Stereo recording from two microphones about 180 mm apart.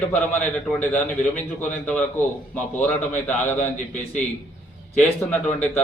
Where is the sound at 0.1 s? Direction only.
5° left (ahead or behind).